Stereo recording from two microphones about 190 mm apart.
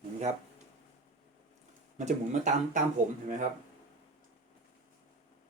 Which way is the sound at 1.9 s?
40° right (ahead or behind).